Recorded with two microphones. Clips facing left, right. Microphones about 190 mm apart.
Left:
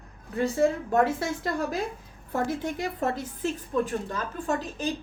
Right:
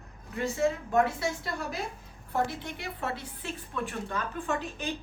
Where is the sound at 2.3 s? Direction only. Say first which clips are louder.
Left 3 dB; 45° left (ahead or behind).